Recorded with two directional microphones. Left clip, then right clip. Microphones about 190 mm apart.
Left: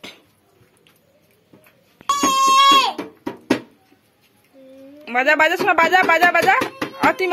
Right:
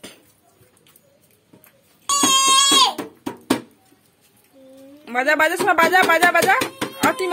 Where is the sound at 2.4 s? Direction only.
25° right (ahead or behind).